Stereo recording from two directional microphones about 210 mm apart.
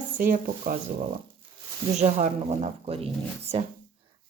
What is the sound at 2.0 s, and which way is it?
Speech, 35° right (ahead or behind).